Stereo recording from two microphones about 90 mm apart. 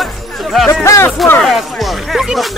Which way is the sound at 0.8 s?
30° left (ahead or behind).